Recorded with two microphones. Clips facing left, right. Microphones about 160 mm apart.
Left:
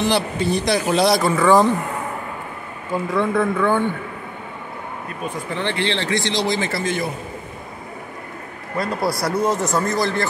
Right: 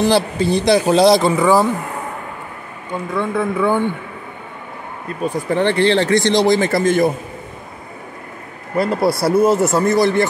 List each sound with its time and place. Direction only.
0.0 s speech: 35° right (ahead or behind)
1.4 s speech: 10° right (ahead or behind)
2.9 s speech: centre (ahead or behind)
5.2 s speech: 50° right (ahead or behind)
8.7 s speech: 25° right (ahead or behind)